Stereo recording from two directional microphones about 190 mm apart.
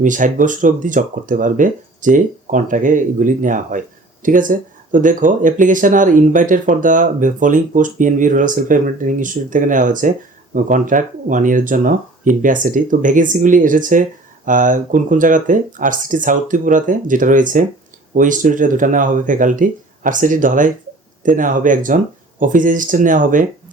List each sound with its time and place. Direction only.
0.0 s speech: 45° right (ahead or behind)